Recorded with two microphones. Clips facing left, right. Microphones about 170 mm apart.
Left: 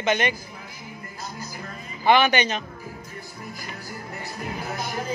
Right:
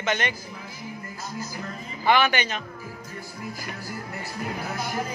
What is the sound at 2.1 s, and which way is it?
Speech, 20° left (ahead or behind).